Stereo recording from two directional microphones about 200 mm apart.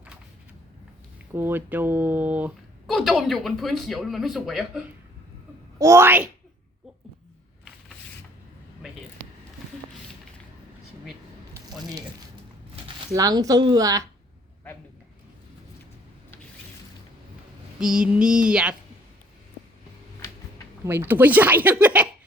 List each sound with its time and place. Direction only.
1.3 s speech: 10° right (ahead or behind)
5.8 s speech: 15° right (ahead or behind)
13.1 s speech: 20° right (ahead or behind)
17.7 s speech: 5° right (ahead or behind)
20.8 s speech: 10° right (ahead or behind)